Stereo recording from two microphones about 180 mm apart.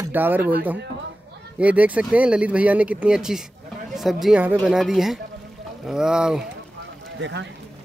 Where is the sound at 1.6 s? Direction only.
10° right (ahead or behind).